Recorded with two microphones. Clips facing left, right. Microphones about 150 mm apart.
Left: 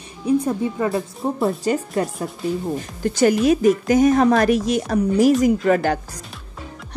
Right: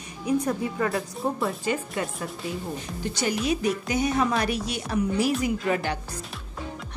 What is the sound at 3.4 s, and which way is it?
A woman's voice, 45° left (ahead or behind).